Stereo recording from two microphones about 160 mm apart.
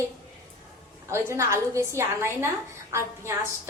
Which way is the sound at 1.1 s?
15° right (ahead or behind).